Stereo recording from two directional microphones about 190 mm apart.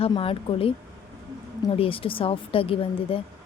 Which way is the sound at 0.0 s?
30° left (ahead or behind).